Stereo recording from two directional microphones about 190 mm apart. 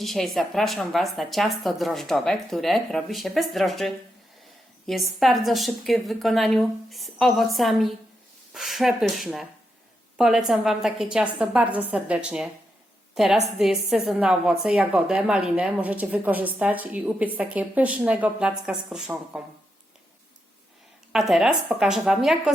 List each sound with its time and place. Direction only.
0.0 s a woman's voice: centre (ahead or behind)
21.1 s a woman's voice: centre (ahead or behind)